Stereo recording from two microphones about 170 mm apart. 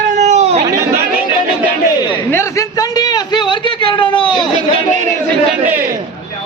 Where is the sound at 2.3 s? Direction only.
15° left (ahead or behind).